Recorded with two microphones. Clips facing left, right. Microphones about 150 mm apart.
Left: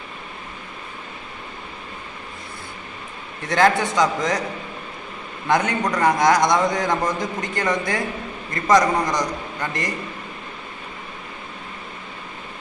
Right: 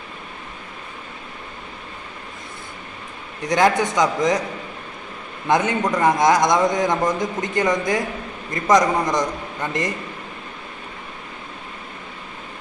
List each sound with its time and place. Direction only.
3.4 s a man's voice: 15° right (ahead or behind)
5.5 s a man's voice: 20° right (ahead or behind)
5.8 s a man's voice: centre (ahead or behind)
6.0 s a man's voice: 20° right (ahead or behind)